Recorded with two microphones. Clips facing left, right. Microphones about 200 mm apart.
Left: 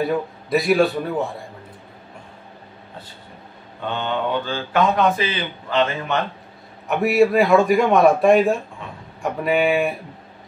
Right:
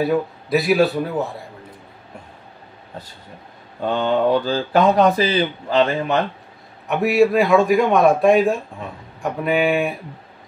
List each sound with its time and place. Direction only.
0.0 s a man's voice: centre (ahead or behind)
3.8 s a man's voice: 40° right (ahead or behind)
6.9 s a man's voice: centre (ahead or behind)